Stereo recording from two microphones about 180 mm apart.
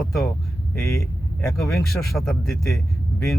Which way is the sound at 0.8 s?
15° left (ahead or behind).